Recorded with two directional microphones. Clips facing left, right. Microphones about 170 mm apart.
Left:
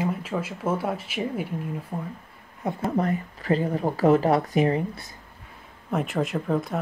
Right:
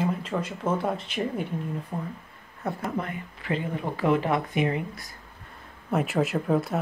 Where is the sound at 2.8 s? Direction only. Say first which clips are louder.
Left 6 dB; 40° left (ahead or behind).